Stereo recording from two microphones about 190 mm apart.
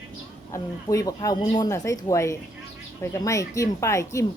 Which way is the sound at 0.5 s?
15° left (ahead or behind).